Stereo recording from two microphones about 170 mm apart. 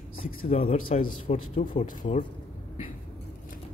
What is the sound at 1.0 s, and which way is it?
A man's voice, 55° left (ahead or behind).